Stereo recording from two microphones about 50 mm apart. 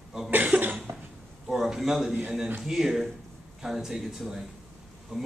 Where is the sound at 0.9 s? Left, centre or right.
Right.